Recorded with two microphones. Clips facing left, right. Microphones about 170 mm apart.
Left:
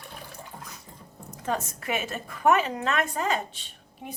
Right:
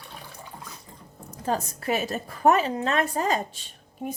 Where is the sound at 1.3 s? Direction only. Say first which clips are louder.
Right 2 dB; 35° right (ahead or behind).